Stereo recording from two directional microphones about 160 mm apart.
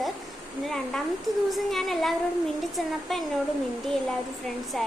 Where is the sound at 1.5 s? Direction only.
Centre (ahead or behind).